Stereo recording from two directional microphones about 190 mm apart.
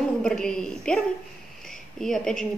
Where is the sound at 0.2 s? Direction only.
5° left (ahead or behind).